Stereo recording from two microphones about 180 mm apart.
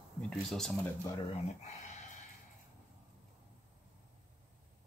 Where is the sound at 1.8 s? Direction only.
40° left (ahead or behind).